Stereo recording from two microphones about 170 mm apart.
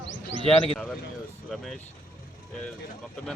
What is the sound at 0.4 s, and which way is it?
Speech, 35° left (ahead or behind).